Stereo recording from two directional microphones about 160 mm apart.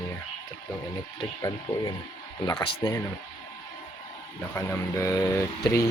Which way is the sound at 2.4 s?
20° left (ahead or behind).